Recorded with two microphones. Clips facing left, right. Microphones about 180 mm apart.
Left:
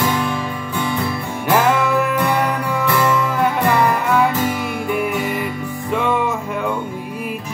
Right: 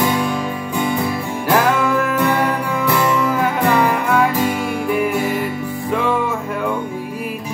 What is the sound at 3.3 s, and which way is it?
Music, centre (ahead or behind).